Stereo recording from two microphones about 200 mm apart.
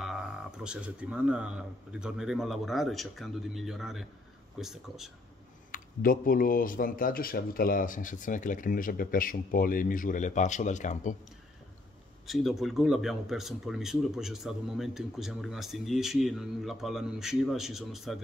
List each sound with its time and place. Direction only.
0.7 s speech: 5° right (ahead or behind)
5.7 s speech: 45° left (ahead or behind)
12.3 s speech: centre (ahead or behind)